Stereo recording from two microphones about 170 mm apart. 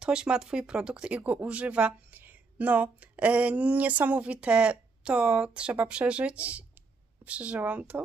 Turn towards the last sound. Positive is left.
turn(degrees=-10)  # may be behind; listen again after turning